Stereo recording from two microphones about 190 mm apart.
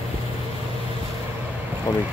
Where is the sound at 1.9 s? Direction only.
20° left (ahead or behind).